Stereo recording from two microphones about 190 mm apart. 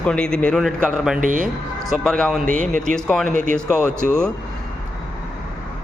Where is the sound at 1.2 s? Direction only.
45° right (ahead or behind).